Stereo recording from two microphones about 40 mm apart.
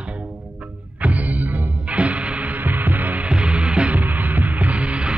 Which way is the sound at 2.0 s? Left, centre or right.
Right.